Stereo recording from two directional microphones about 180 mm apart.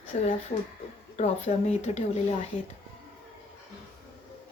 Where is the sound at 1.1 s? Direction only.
40° left (ahead or behind).